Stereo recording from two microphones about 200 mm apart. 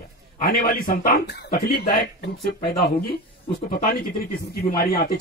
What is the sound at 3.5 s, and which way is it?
Speech, 40° left (ahead or behind).